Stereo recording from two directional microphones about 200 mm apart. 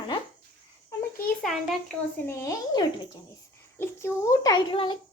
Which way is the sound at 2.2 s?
15° left (ahead or behind).